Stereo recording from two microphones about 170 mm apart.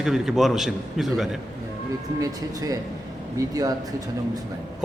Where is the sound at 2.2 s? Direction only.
20° right (ahead or behind).